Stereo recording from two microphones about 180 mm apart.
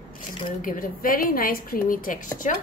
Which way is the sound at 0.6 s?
50° left (ahead or behind).